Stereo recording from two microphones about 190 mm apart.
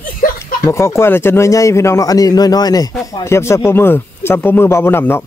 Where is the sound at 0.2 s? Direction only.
45° left (ahead or behind).